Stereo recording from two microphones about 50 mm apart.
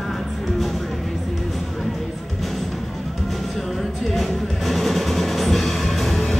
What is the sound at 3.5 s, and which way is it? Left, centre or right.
Music, centre.